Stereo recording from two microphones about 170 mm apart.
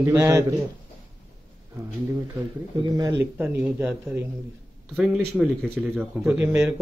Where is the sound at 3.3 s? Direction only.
10° right (ahead or behind).